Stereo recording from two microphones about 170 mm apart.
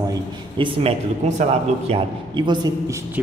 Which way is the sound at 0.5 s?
35° right (ahead or behind).